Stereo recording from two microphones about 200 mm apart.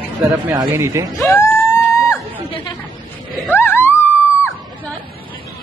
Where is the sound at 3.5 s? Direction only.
10° left (ahead or behind).